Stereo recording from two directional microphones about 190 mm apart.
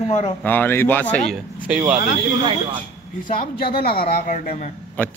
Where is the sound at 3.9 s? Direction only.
50° left (ahead or behind).